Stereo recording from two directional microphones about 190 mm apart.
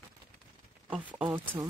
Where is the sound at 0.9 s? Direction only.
10° right (ahead or behind).